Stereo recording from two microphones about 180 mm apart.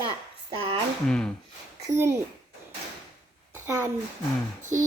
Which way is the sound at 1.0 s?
5° left (ahead or behind).